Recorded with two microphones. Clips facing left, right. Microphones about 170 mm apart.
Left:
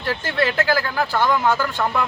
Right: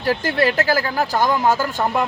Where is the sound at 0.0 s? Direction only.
40° right (ahead or behind).